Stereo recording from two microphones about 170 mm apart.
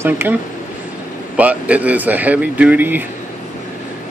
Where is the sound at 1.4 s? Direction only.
10° right (ahead or behind).